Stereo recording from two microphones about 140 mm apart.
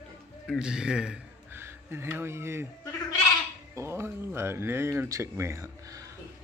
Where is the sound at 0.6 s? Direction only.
5° right (ahead or behind).